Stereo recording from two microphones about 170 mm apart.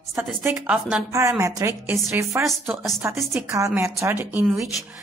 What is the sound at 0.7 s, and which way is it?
Speech, 5° right (ahead or behind).